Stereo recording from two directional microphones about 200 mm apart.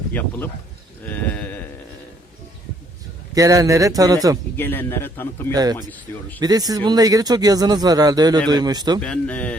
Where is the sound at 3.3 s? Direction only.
15° right (ahead or behind).